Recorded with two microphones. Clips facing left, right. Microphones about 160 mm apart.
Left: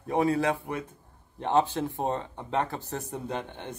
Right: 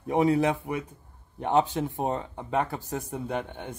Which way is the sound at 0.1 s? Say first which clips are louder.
Right 2 dB; 20° right (ahead or behind).